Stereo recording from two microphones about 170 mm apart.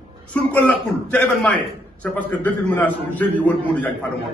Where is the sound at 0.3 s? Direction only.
10° left (ahead or behind).